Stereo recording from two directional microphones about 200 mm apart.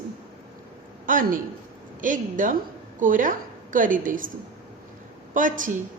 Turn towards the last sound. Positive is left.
turn(degrees=-40)  # may be behind; listen again after turning